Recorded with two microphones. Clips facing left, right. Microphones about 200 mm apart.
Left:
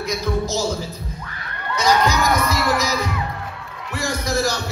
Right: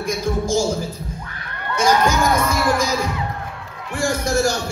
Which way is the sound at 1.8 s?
50° right (ahead or behind).